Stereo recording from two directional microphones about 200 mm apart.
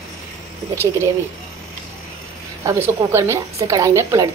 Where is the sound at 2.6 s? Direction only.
15° right (ahead or behind).